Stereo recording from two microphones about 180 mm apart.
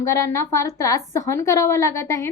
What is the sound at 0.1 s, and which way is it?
A woman's voice, 15° left (ahead or behind).